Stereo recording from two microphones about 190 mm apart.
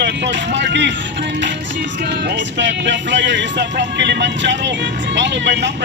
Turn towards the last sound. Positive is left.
turn(degrees=-65)  # may be behind; listen again after turning